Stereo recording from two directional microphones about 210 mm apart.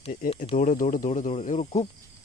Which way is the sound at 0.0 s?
40° left (ahead or behind).